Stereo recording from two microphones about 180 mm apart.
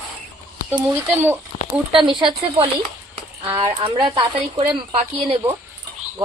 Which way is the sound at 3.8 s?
30° right (ahead or behind).